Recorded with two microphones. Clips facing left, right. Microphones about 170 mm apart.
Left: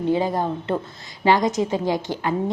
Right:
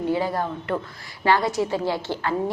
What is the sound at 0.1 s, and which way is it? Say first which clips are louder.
A woman's voice: left 5 dB; 20° left (ahead or behind).